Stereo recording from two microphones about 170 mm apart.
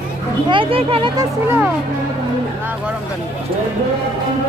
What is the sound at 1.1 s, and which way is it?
Speech, 15° right (ahead or behind).